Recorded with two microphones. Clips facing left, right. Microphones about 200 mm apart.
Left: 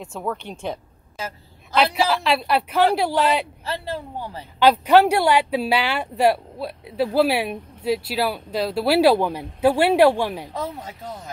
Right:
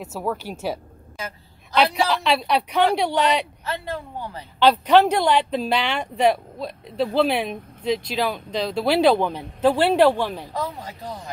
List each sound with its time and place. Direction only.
0.0 s speech: 5° right (ahead or behind)
1.8 s speech: centre (ahead or behind)
3.6 s speech: 30° left (ahead or behind)
4.6 s speech: 10° left (ahead or behind)